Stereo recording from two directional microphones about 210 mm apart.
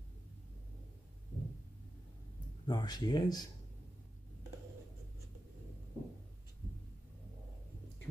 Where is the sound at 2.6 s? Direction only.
20° left (ahead or behind).